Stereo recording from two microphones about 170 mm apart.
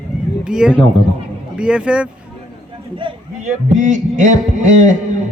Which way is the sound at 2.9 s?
30° right (ahead or behind).